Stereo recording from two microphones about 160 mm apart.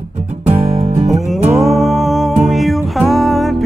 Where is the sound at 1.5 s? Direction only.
Centre (ahead or behind).